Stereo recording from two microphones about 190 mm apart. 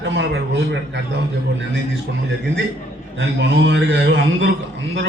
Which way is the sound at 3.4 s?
70° right (ahead or behind).